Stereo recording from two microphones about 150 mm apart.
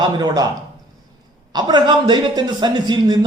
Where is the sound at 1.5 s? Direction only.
30° right (ahead or behind).